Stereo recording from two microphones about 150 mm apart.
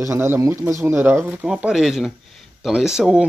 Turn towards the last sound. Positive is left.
turn(degrees=-5)  # may be behind; listen again after turning